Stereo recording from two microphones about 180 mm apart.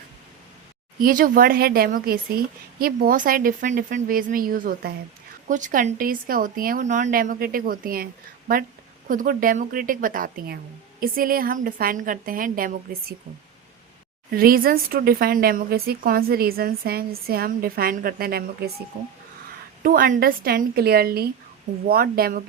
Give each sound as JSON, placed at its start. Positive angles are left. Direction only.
{"t": 0.9, "sound": "speech", "side_deg": -55}
{"t": 9.0, "sound": "speech", "side_deg": -50}
{"t": 14.3, "sound": "speech", "side_deg": -55}
{"t": 19.8, "sound": "speech", "side_deg": -50}